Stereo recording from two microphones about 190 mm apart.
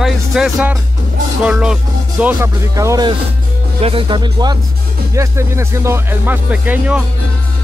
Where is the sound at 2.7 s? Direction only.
20° right (ahead or behind).